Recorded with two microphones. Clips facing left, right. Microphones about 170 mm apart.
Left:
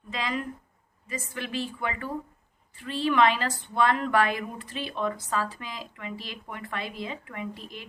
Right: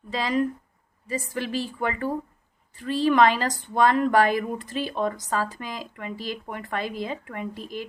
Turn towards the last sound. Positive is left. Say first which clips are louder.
# right 5 dB
turn(degrees=-40)  # may be behind; listen again after turning